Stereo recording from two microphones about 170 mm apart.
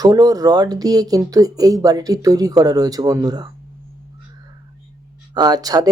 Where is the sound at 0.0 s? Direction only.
20° right (ahead or behind).